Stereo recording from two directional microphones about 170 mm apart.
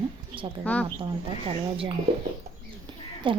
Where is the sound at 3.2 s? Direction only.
30° right (ahead or behind).